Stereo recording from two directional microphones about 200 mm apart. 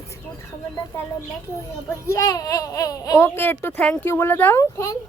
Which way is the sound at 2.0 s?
15° left (ahead or behind).